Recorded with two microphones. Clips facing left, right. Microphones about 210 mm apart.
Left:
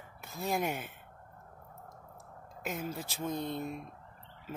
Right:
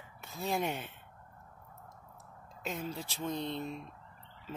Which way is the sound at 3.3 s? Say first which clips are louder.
Left 1 dB; 45° left (ahead or behind).